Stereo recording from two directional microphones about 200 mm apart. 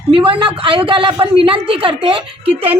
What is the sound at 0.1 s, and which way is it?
A woman's voice, 25° right (ahead or behind).